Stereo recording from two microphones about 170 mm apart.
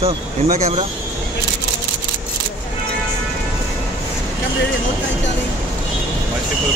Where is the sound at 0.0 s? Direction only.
40° right (ahead or behind).